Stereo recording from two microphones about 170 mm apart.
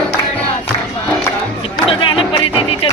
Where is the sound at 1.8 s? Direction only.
30° left (ahead or behind).